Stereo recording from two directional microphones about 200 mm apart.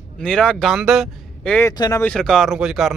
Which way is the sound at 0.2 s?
5° left (ahead or behind).